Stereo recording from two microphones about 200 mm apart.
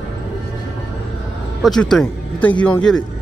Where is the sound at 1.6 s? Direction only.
Centre (ahead or behind).